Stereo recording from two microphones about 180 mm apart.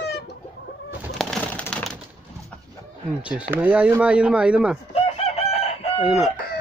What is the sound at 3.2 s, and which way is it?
Speech, 5° right (ahead or behind).